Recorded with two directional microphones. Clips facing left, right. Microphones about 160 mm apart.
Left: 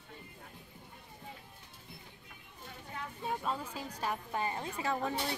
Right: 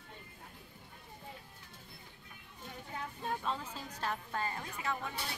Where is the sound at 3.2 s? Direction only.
10° left (ahead or behind).